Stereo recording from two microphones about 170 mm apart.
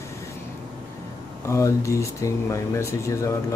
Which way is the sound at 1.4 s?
15° left (ahead or behind).